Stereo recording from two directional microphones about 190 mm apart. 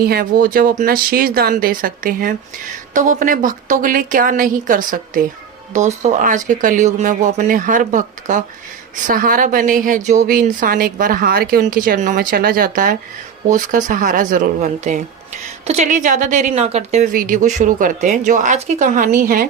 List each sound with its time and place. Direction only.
0.0 s speech: 55° right (ahead or behind)